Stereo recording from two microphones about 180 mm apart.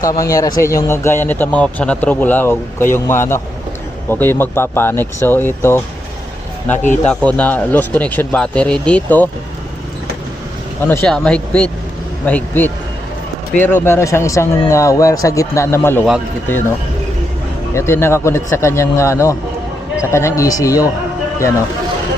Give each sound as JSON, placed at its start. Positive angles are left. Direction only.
{"t": 0.0, "sound": "speech", "side_deg": 20}
{"t": 7.0, "sound": "speech", "side_deg": 5}
{"t": 10.8, "sound": "speech", "side_deg": 10}
{"t": 17.7, "sound": "speech", "side_deg": 15}